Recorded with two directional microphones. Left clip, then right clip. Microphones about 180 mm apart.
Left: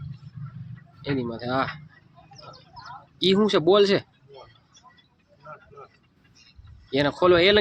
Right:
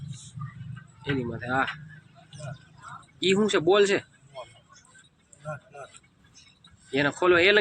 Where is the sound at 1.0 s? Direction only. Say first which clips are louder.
Left 2 dB; 15° left (ahead or behind).